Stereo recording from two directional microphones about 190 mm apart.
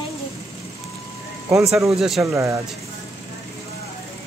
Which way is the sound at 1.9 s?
Centre (ahead or behind).